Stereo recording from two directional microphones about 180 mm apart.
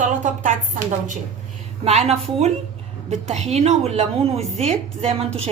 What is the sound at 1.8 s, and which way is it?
A woman's voice, 35° right (ahead or behind).